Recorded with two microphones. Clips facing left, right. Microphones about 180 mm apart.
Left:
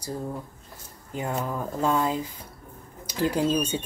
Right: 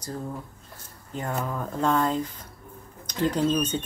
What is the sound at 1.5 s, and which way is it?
Speech, 5° left (ahead or behind).